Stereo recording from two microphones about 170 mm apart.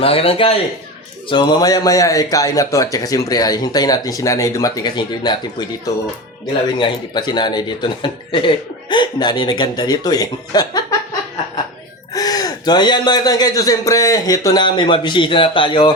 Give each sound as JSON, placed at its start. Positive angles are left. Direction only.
{"t": 0.0, "sound": "speech", "side_deg": 35}
{"t": 12.1, "sound": "speech", "side_deg": 20}